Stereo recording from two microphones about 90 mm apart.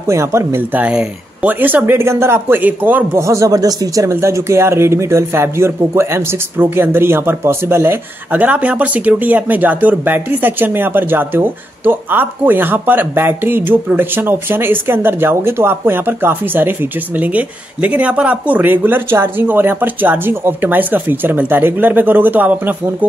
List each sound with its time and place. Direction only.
0.0 s speech: 30° right (ahead or behind)
0.7 s speech: 15° right (ahead or behind)
3.2 s speech: 35° right (ahead or behind)